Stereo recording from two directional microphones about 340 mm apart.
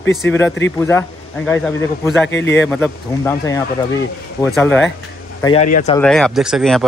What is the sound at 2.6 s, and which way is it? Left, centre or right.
Speech, centre.